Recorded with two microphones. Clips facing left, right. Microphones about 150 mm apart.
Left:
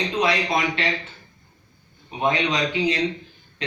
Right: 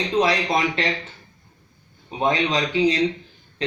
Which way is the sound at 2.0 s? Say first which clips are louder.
Right 1 dB; 35° right (ahead or behind).